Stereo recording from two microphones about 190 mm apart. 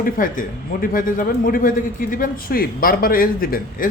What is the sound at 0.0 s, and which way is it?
A man's voice, 45° left (ahead or behind).